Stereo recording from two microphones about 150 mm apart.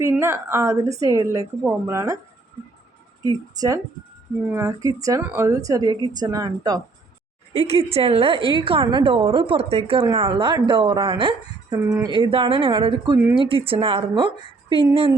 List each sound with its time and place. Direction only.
0.0 s a woman's voice: 15° right (ahead or behind)
3.2 s a woman's voice: 25° right (ahead or behind)
7.7 s a woman's voice: 40° right (ahead or behind)
11.8 s speech: 15° right (ahead or behind)
12.0 s a woman's voice: 30° right (ahead or behind)